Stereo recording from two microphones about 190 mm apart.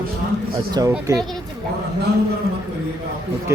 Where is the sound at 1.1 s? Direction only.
15° right (ahead or behind).